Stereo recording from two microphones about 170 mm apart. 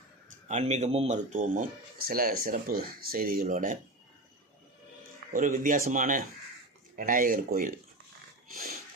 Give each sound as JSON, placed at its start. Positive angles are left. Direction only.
{"t": 0.4, "sound": "speech", "side_deg": -40}
{"t": 5.3, "sound": "speech", "side_deg": -55}